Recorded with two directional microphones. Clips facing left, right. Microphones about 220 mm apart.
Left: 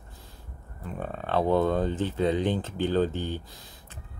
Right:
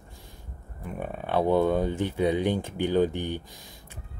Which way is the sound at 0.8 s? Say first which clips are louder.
Right 1 dB; 15° right (ahead or behind).